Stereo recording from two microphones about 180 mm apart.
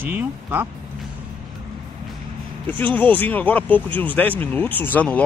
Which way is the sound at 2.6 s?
10° left (ahead or behind).